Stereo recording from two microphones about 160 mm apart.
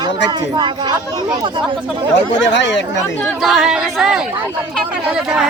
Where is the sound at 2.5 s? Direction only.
90° left.